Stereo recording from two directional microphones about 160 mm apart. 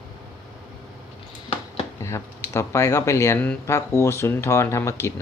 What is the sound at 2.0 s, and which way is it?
Speech, 15° left (ahead or behind).